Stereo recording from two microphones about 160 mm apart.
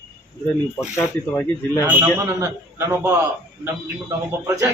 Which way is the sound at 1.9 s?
15° right (ahead or behind).